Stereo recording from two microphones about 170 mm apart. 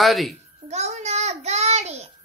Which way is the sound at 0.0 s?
Centre (ahead or behind).